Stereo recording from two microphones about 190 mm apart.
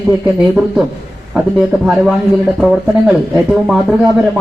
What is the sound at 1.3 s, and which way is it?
Speech, 5° right (ahead or behind).